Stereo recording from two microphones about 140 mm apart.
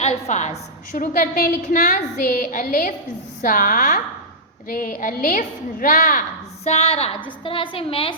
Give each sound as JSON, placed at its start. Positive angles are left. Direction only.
{"t": 0.0, "sound": "a woman's voice", "side_deg": 55}
{"t": 4.7, "sound": "a woman's voice", "side_deg": 90}
{"t": 6.7, "sound": "a woman's voice", "side_deg": 45}